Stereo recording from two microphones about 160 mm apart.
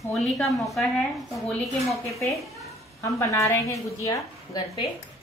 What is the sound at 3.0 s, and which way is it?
A woman's voice, 20° left (ahead or behind).